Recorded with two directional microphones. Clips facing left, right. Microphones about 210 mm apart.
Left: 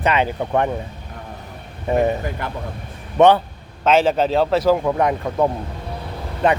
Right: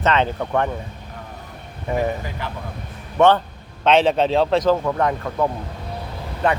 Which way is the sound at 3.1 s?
15° left (ahead or behind).